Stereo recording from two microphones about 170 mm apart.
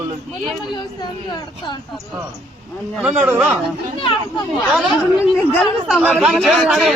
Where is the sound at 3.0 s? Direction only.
10° right (ahead or behind).